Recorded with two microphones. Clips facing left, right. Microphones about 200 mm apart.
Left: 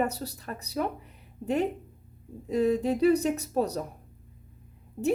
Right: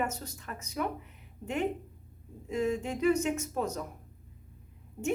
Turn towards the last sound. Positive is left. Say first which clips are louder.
# left 5 dB
turn(degrees=35)  # may be behind; listen again after turning